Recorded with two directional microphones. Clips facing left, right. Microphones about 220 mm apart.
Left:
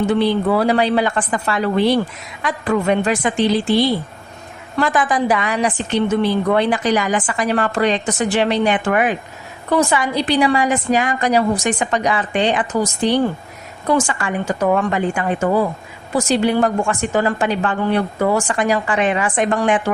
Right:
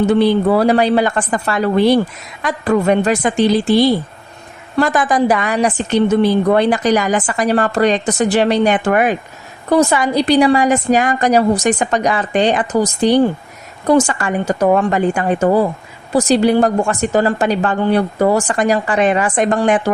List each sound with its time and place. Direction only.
0.1 s a woman's voice: 40° right (ahead or behind)